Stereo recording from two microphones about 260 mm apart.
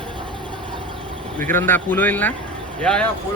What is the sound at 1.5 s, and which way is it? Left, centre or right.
Speech, centre.